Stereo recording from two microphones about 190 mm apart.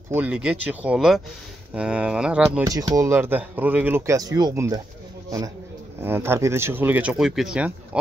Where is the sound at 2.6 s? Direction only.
20° right (ahead or behind).